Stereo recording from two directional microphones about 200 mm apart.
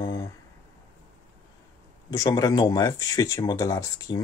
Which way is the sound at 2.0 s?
20° left (ahead or behind).